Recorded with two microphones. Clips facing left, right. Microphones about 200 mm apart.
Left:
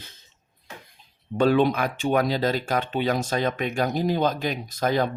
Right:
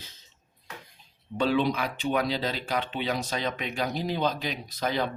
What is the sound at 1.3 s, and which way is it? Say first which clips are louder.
Speech: left 5 dB; 50° left (ahead or behind).